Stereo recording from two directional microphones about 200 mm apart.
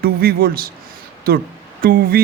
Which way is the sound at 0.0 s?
50° right (ahead or behind).